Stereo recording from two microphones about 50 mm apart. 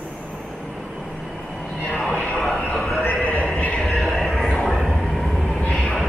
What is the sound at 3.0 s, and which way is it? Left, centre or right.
Horse, left.